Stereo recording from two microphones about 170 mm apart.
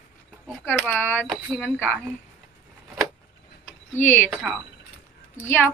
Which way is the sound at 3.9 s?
10° left (ahead or behind).